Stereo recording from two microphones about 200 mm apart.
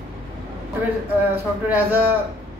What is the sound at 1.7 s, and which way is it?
Speech, 10° right (ahead or behind).